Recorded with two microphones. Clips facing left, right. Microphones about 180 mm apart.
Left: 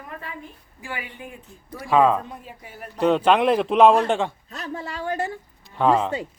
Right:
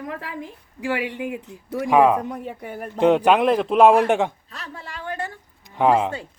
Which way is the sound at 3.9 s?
15° right (ahead or behind).